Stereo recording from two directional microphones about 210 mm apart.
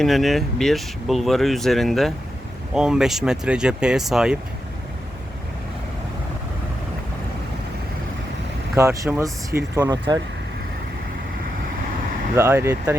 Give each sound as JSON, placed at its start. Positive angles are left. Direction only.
{"t": 0.0, "sound": "speech", "side_deg": 0}
{"t": 8.7, "sound": "speech", "side_deg": -15}
{"t": 12.4, "sound": "speech", "side_deg": -10}